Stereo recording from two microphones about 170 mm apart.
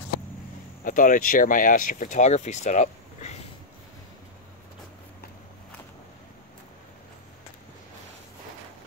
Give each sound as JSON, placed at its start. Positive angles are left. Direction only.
{"t": 0.8, "sound": "speech", "side_deg": 50}